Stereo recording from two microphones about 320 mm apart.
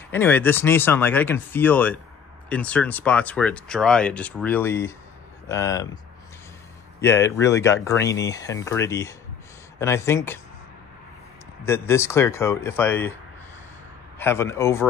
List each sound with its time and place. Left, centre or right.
0.1 s speech: centre
7.0 s speech: centre
11.6 s speech: centre
14.1 s speech: centre